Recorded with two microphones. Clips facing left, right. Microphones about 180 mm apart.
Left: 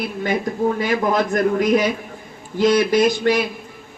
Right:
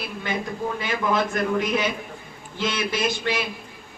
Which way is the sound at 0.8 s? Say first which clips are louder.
Left 5 dB; 45° left (ahead or behind).